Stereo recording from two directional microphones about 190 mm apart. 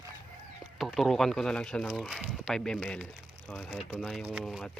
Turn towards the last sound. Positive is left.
turn(degrees=0)  # may be behind; listen again after turning